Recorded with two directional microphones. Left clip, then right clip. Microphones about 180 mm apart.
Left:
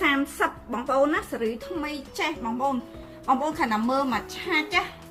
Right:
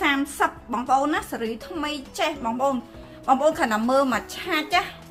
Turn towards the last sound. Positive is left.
turn(degrees=-40)  # may be behind; listen again after turning